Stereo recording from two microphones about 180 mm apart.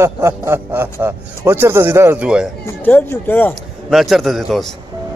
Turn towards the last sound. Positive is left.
turn(degrees=0)  # may be behind; listen again after turning